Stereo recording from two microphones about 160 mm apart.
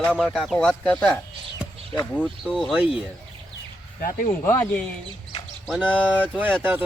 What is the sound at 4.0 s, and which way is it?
Speech, 60° left (ahead or behind).